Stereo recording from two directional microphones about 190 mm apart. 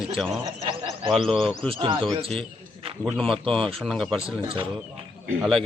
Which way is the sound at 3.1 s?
Centre (ahead or behind).